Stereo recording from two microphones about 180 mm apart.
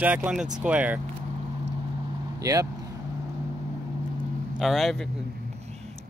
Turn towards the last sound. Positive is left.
turn(degrees=0)  # may be behind; listen again after turning